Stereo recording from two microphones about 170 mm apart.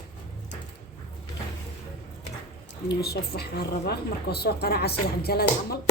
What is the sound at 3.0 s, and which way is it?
A woman's voice, 65° left (ahead or behind).